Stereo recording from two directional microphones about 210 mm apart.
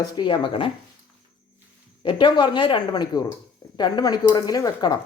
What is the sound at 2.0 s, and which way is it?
A woman's voice, 25° left (ahead or behind).